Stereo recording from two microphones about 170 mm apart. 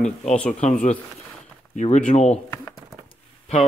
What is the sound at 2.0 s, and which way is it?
Speech, 40° left (ahead or behind).